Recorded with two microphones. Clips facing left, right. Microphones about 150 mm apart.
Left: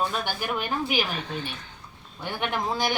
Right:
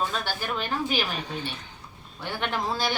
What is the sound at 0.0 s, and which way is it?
A woman's voice, 15° left (ahead or behind).